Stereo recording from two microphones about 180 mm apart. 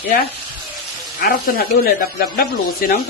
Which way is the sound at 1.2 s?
55° left (ahead or behind).